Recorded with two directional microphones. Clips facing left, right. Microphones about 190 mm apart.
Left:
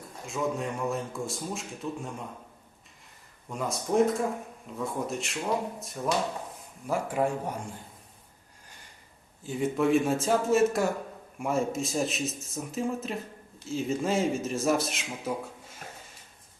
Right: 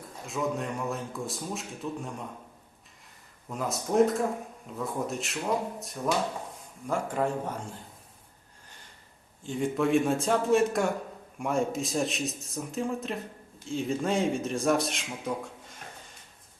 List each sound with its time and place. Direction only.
0.3 s a man's voice: centre (ahead or behind)
3.5 s a man's voice: centre (ahead or behind)
9.4 s a man's voice: 5° left (ahead or behind)